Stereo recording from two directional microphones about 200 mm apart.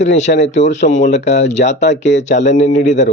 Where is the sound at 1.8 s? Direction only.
60° left (ahead or behind).